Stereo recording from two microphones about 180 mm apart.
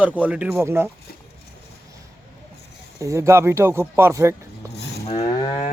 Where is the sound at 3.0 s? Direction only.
15° right (ahead or behind).